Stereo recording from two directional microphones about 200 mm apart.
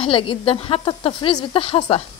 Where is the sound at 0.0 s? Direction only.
25° left (ahead or behind).